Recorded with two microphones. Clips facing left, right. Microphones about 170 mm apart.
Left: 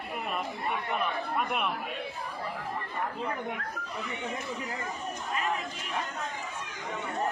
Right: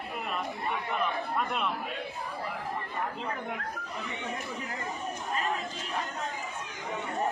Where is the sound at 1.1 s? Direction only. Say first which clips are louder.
Even; centre (ahead or behind).